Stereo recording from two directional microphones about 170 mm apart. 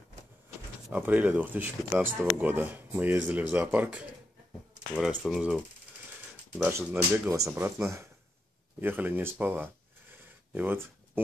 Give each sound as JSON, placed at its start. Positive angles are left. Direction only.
{"t": 0.8, "sound": "speech", "side_deg": -10}
{"t": 5.2, "sound": "speech", "side_deg": 0}
{"t": 6.6, "sound": "speech", "side_deg": -15}
{"t": 10.1, "sound": "a sound", "side_deg": -10}